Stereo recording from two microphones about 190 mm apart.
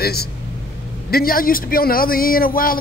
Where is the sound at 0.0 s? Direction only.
55° left (ahead or behind).